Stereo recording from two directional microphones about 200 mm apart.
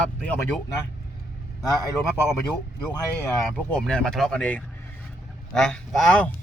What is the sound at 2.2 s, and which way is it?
Speech, 10° left (ahead or behind).